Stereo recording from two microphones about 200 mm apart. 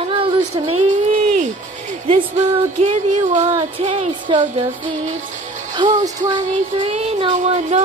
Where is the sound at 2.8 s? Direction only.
35° right (ahead or behind).